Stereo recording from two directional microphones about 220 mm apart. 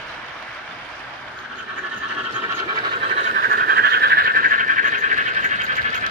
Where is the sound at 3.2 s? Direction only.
40° right (ahead or behind).